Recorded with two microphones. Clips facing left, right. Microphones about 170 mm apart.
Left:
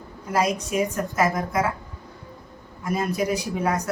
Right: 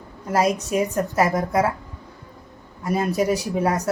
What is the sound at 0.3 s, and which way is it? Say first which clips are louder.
Speech: right 2 dB; 35° right (ahead or behind).